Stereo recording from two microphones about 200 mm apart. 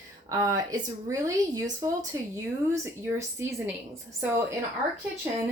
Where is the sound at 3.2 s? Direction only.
15° right (ahead or behind).